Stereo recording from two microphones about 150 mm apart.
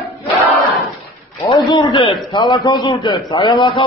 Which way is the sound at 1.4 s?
25° left (ahead or behind).